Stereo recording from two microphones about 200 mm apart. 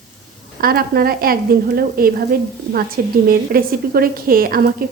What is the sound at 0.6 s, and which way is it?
Speech, 50° right (ahead or behind).